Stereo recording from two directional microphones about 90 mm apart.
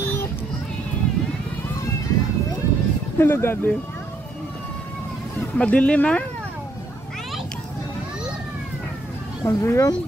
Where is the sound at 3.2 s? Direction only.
25° left (ahead or behind).